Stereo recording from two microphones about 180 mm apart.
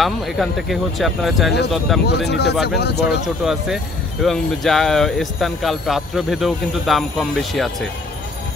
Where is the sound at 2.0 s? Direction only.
70° left (ahead or behind).